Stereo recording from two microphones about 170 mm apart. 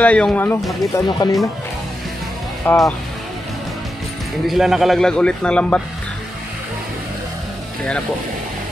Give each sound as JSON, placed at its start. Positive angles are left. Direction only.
{"t": 0.0, "sound": "speech", "side_deg": 5}
{"t": 0.9, "sound": "speech", "side_deg": 20}
{"t": 2.6, "sound": "speech", "side_deg": 10}
{"t": 4.5, "sound": "a man's voice", "side_deg": 0}